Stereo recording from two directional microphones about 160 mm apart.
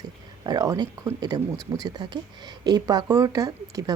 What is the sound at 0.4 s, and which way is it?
Speech, 25° right (ahead or behind).